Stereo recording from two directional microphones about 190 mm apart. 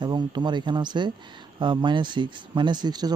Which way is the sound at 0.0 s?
25° right (ahead or behind).